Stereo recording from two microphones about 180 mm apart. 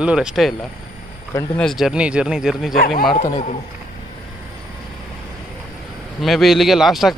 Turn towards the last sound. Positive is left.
turn(degrees=0)  # may be behind; listen again after turning